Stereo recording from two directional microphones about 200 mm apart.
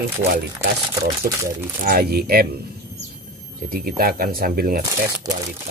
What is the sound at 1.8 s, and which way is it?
Speech, 50° right (ahead or behind).